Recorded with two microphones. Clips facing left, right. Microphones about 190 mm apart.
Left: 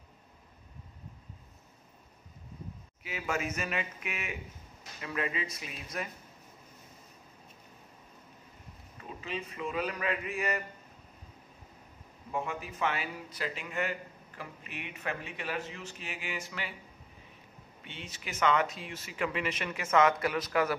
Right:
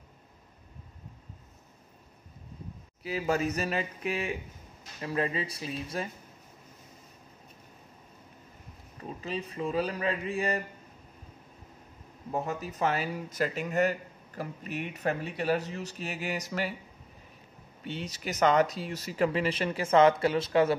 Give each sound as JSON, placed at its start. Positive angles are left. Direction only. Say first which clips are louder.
{"t": 3.0, "sound": "speech", "louder": "right 6 dB", "side_deg": -35}
{"t": 9.2, "sound": "speech", "louder": "right 4 dB", "side_deg": -35}
{"t": 12.3, "sound": "speech", "louder": "right 3 dB", "side_deg": -40}
{"t": 17.8, "sound": "speech", "louder": "right 9 dB", "side_deg": -40}